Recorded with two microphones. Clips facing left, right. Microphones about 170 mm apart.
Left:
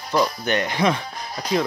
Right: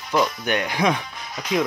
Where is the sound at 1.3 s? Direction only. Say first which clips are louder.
Left 1 dB; 35° left (ahead or behind).